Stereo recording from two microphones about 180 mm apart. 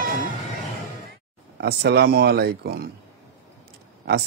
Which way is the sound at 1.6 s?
65° right (ahead or behind).